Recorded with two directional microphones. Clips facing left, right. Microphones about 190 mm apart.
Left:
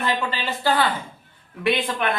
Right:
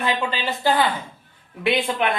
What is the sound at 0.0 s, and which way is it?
Speech, 15° right (ahead or behind).